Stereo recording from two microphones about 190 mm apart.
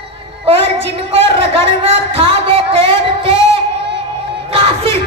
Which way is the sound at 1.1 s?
30° right (ahead or behind).